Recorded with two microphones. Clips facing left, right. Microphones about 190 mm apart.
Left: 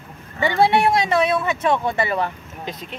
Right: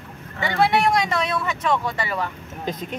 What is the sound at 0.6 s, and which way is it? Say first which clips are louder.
Speech: left 2 dB; 30° left (ahead or behind).